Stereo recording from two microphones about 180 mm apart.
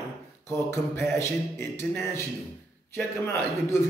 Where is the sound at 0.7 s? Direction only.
15° left (ahead or behind).